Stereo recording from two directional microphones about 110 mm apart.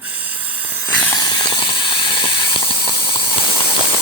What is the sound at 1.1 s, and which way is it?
Ratchet, 40° left (ahead or behind).